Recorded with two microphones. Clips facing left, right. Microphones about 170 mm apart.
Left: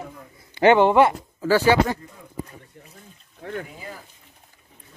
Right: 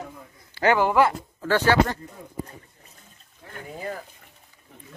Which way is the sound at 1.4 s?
10° left (ahead or behind).